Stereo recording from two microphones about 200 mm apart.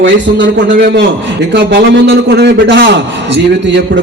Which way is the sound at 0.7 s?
50° right (ahead or behind).